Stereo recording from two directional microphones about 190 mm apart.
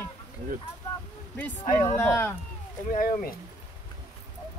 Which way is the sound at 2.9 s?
45° left (ahead or behind).